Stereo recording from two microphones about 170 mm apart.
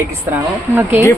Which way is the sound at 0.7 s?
15° right (ahead or behind).